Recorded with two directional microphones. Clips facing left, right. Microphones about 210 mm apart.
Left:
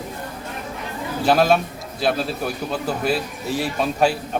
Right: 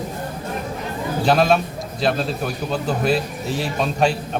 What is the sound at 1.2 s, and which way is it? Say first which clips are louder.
Speech: even; 5° left (ahead or behind).